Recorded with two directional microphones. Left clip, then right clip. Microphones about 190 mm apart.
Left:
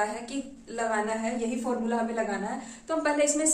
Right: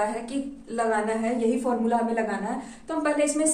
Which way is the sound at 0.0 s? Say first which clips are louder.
Right 3 dB; 15° left (ahead or behind).